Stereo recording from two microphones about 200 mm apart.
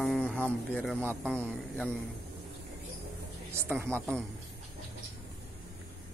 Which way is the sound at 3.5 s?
10° right (ahead or behind).